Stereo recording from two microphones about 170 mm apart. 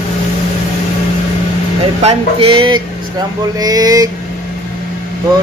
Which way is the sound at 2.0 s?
30° right (ahead or behind).